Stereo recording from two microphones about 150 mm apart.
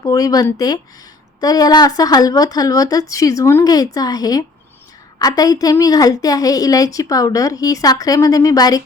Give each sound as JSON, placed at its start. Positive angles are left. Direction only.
{"t": 0.0, "sound": "a woman's voice", "side_deg": 25}